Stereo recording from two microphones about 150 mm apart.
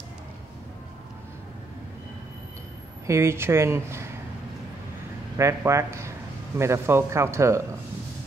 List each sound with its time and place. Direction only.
3.1 s speech: 15° right (ahead or behind)
5.4 s speech: 20° right (ahead or behind)